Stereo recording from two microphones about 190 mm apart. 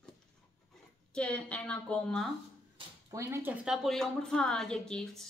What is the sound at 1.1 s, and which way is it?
A woman's voice, 5° left (ahead or behind).